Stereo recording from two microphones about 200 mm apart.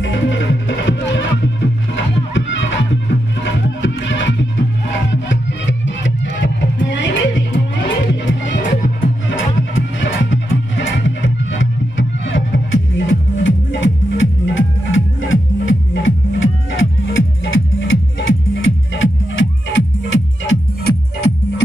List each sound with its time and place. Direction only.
0.0 s music: 65° left (ahead or behind)